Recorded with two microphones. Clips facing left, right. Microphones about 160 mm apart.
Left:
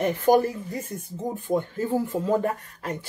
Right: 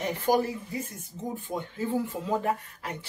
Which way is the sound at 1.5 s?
50° left (ahead or behind).